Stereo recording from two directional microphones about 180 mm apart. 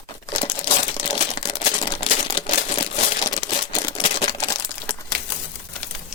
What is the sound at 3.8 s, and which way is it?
Crumpling, 20° left (ahead or behind).